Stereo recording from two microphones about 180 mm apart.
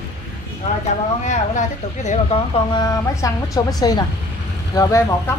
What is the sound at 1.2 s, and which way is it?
Speech, 40° left (ahead or behind).